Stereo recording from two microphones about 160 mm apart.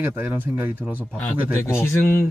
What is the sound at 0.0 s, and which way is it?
Speech, 10° right (ahead or behind).